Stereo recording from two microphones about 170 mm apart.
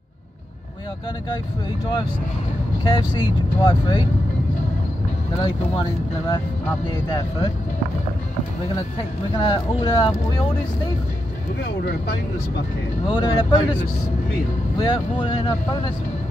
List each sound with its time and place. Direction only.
2.8 s speech: 25° left (ahead or behind)
5.4 s speech: 25° left (ahead or behind)
9.4 s speech: 30° left (ahead or behind)
13.1 s speech: 25° left (ahead or behind)
14.8 s speech: 30° left (ahead or behind)